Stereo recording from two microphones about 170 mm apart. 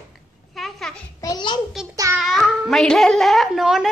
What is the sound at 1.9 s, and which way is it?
Child singing, 20° right (ahead or behind).